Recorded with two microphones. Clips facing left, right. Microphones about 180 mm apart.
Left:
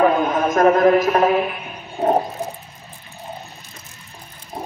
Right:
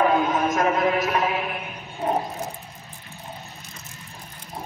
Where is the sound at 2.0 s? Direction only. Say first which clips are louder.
Left 7 dB; 40° left (ahead or behind).